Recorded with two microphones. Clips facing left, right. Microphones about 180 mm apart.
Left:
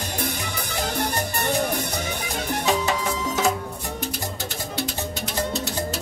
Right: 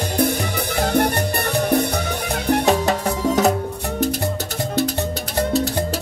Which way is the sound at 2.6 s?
60° right (ahead or behind).